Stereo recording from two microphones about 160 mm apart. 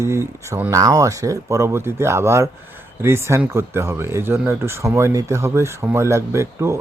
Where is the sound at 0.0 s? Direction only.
15° right (ahead or behind).